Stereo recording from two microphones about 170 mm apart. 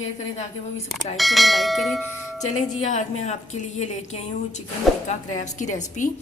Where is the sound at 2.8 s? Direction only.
45° left (ahead or behind).